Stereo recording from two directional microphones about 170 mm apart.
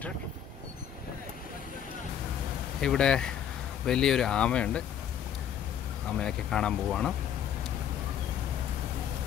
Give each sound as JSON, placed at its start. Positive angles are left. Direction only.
{"t": 2.8, "sound": "speech", "side_deg": 5}
{"t": 6.0, "sound": "speech", "side_deg": 5}